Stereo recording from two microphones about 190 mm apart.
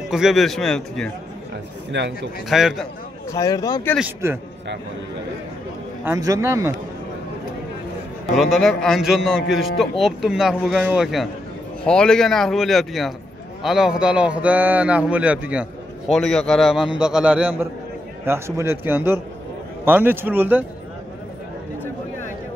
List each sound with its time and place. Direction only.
0.1 s a man's voice: centre (ahead or behind)
1.9 s a man's voice: 65° right (ahead or behind)
2.5 s a man's voice: centre (ahead or behind)
3.3 s speech: 20° left (ahead or behind)
6.0 s a man's voice: 15° right (ahead or behind)
8.4 s a man's voice: centre (ahead or behind)